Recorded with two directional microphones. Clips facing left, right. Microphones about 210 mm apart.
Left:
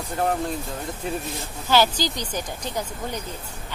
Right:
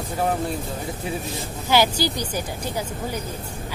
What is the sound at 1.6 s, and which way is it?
Speech, 15° right (ahead or behind).